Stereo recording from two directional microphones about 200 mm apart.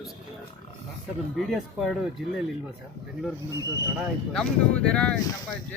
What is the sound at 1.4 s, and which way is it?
Speech, centre (ahead or behind).